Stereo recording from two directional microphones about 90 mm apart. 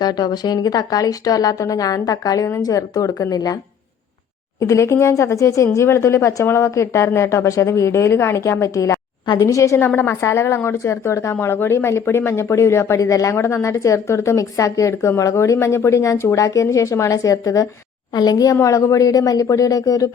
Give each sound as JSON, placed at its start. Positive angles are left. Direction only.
{"t": 0.0, "sound": "speech", "side_deg": 50}
{"t": 4.6, "sound": "a woman's voice", "side_deg": 35}
{"t": 9.2, "sound": "a woman's voice", "side_deg": 55}
{"t": 9.5, "sound": "a woman's voice", "side_deg": 35}
{"t": 18.1, "sound": "a woman's voice", "side_deg": 50}